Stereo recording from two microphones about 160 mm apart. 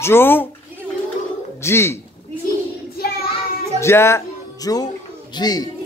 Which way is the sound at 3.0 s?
70° left (ahead or behind).